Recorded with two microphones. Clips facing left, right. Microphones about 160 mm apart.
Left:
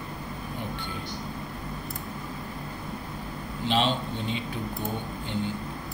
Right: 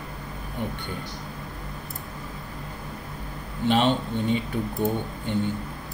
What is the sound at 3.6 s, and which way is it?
Speech, 50° right (ahead or behind).